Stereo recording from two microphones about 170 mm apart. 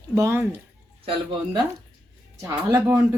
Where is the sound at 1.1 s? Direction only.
25° right (ahead or behind).